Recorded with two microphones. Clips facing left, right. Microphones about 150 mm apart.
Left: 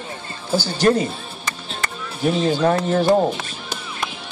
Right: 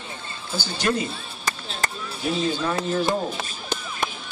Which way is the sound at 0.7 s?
40° left (ahead or behind).